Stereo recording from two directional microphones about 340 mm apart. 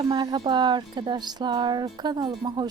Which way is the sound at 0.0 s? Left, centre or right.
Centre.